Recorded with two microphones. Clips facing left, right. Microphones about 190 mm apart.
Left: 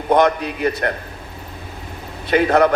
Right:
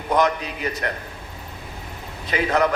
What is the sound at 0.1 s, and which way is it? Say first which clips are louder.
Speech: left 5 dB; 60° left (ahead or behind).